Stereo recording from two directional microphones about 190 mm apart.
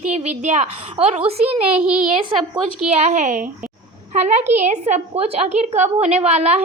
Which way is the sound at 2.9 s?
35° right (ahead or behind).